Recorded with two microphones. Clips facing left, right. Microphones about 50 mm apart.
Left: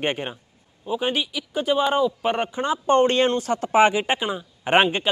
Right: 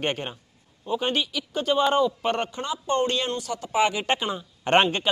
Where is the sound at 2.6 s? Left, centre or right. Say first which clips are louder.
Left 8 dB; left.